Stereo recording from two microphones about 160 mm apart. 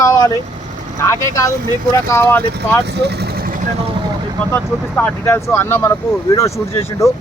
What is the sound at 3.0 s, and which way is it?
Vehicle, 90° right.